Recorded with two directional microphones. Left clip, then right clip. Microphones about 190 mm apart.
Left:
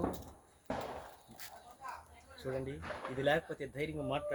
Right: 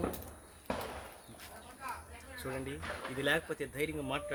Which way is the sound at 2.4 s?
20° right (ahead or behind).